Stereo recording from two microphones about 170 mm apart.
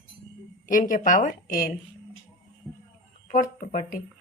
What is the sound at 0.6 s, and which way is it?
Speech, 50° left (ahead or behind).